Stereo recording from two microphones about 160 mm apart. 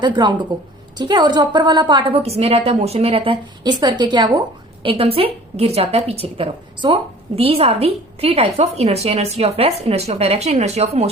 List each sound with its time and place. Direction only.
0.0 s a woman's voice: 30° right (ahead or behind)